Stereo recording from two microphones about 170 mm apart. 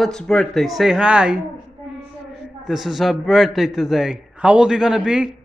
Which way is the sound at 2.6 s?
Centre (ahead or behind).